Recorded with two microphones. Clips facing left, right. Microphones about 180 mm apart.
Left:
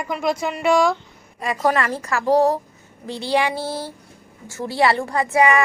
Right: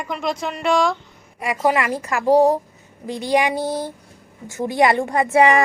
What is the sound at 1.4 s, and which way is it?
A woman's voice, 15° right (ahead or behind).